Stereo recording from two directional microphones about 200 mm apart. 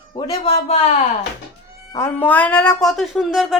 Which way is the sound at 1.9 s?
10° left (ahead or behind).